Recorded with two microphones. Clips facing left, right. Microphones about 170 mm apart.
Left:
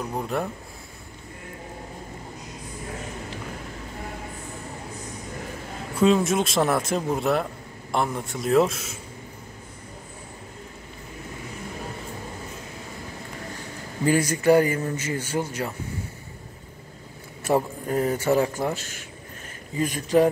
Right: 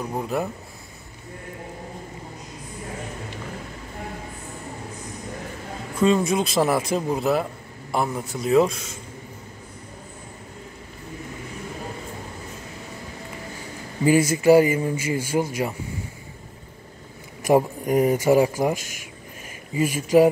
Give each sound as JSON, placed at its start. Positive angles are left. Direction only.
{"t": 0.1, "sound": "speech", "side_deg": -5}
{"t": 5.9, "sound": "speech", "side_deg": 0}
{"t": 14.0, "sound": "a man's voice", "side_deg": -10}
{"t": 17.4, "sound": "a man's voice", "side_deg": -15}